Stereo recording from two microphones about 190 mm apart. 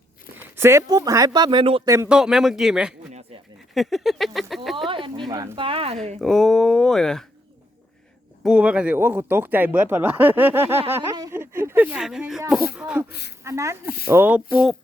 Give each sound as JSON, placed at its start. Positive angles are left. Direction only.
{"t": 0.3, "sound": "speech", "side_deg": -10}
{"t": 2.0, "sound": "speech", "side_deg": -5}
{"t": 3.8, "sound": "a sound", "side_deg": 0}
{"t": 4.9, "sound": "a sound", "side_deg": -25}
{"t": 5.3, "sound": "speech", "side_deg": -20}
{"t": 6.1, "sound": "speech", "side_deg": 0}
{"t": 8.4, "sound": "speech", "side_deg": -5}
{"t": 10.9, "sound": "a sound", "side_deg": -15}
{"t": 12.7, "sound": "speech", "side_deg": -5}
{"t": 13.1, "sound": "speech", "side_deg": 60}
{"t": 13.4, "sound": "speech", "side_deg": -15}